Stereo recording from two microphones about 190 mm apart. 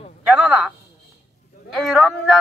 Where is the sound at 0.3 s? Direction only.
5° right (ahead or behind).